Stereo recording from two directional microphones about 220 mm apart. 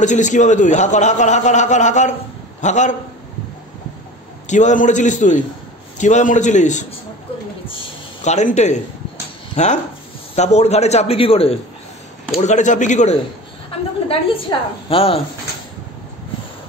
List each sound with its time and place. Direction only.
0.0 s a man's voice: 35° left (ahead or behind)
4.5 s a man's voice: 35° left (ahead or behind)
7.6 s a sound: 30° left (ahead or behind)
9.6 s a man's voice: 30° left (ahead or behind)
13.7 s a sound: 25° left (ahead or behind)
14.9 s a man's voice: 25° left (ahead or behind)